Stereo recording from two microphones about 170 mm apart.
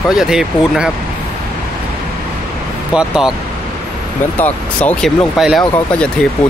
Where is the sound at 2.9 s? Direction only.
5° right (ahead or behind).